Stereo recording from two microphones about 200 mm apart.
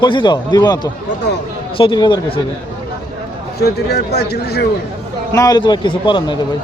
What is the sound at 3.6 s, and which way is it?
Speech, 55° left (ahead or behind).